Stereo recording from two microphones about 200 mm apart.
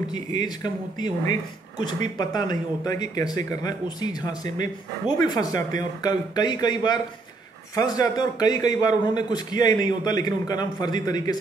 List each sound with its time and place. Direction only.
0.1 s a man's voice: 20° left (ahead or behind)